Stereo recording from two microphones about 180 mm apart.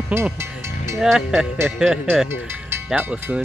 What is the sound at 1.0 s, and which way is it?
Speech, centre (ahead or behind).